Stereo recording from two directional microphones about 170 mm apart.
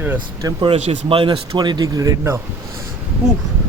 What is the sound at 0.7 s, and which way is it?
Speech, 40° right (ahead or behind).